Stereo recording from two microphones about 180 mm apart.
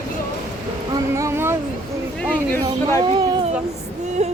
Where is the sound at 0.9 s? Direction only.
15° right (ahead or behind).